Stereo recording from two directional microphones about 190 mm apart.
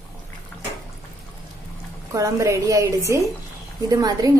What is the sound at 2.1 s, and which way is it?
Speech, 15° right (ahead or behind).